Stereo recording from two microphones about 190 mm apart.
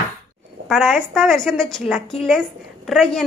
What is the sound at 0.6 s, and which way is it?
A woman's voice, centre (ahead or behind).